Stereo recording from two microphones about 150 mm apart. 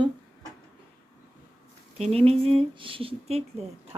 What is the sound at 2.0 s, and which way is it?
Speech, 45° right (ahead or behind).